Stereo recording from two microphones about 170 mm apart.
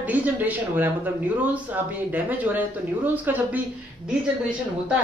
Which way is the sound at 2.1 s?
10° right (ahead or behind).